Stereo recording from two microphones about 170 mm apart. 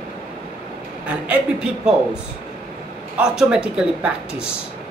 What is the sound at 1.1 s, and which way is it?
Speech, 5° right (ahead or behind).